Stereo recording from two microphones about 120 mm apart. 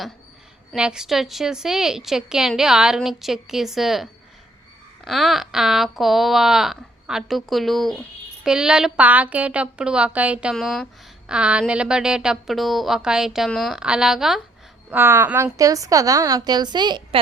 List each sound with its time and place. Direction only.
0.8 s a woman's voice: 5° right (ahead or behind)
10.5 s a woman's voice: centre (ahead or behind)
14.8 s a woman's voice: 15° right (ahead or behind)
15.5 s a woman's voice: 30° right (ahead or behind)